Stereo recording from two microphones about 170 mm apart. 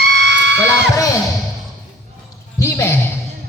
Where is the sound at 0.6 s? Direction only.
20° left (ahead or behind).